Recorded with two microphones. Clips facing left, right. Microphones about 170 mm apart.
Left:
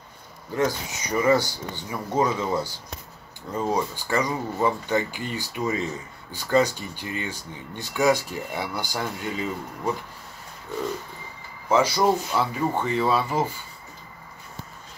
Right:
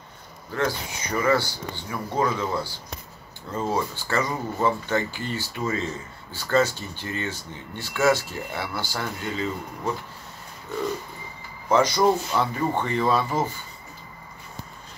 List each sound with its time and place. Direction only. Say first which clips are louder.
0.6 s speech: left 2 dB; 15° left (ahead or behind)
11.7 s speech: right 1 dB; 10° left (ahead or behind)